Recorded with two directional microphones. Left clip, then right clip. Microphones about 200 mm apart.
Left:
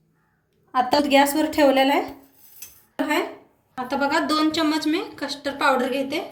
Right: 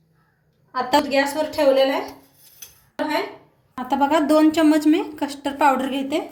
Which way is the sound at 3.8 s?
45° right (ahead or behind).